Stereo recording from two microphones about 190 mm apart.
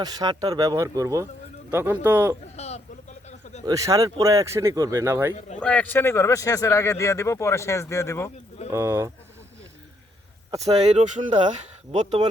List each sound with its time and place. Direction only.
0.0 s speech: 20° right (ahead or behind)
2.6 s a sound: 35° left (ahead or behind)
3.7 s speech: 15° right (ahead or behind)
5.5 s speech: 5° left (ahead or behind)
8.7 s speech: 15° right (ahead or behind)
10.6 s speech: 35° right (ahead or behind)